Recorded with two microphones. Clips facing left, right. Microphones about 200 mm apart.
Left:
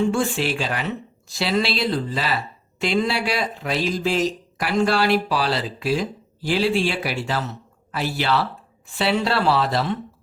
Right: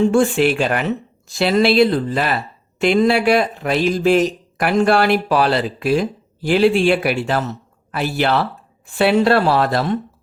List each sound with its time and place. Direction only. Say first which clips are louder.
0.1 s speech: right 8 dB; 55° right (ahead or behind)